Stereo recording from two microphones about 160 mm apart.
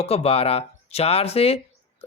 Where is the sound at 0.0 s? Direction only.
40° left (ahead or behind).